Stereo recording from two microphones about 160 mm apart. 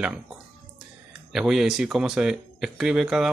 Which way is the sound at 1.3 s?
Centre (ahead or behind).